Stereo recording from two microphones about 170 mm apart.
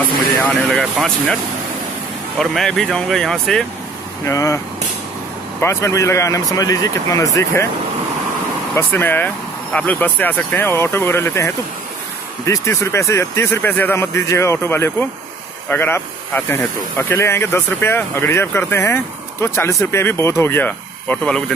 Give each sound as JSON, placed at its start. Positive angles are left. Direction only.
{"t": 0.7, "sound": "speech", "side_deg": 5}
{"t": 4.2, "sound": "speech", "side_deg": 15}
{"t": 5.6, "sound": "speech", "side_deg": 15}
{"t": 8.7, "sound": "speech", "side_deg": 10}